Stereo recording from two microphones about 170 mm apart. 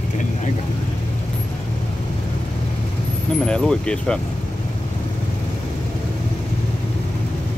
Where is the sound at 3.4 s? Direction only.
5° left (ahead or behind).